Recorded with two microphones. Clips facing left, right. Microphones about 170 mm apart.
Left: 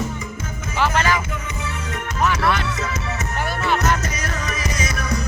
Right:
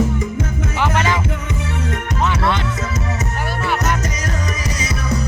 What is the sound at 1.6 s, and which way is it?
Music, 65° right (ahead or behind).